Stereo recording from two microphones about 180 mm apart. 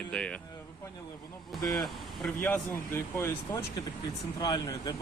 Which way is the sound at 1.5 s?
Centre (ahead or behind).